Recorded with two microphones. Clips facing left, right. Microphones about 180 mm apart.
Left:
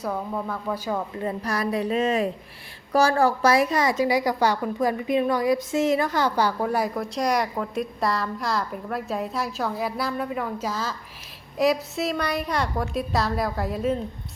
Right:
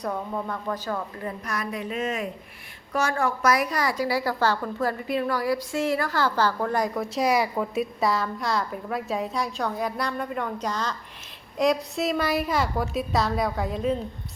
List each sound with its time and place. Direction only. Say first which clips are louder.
0.0 s a woman's voice: left 1 dB; 5° left (ahead or behind)
0.9 s a woman's voice: left 4 dB; 30° left (ahead or behind); by 14.0 s centre (ahead or behind)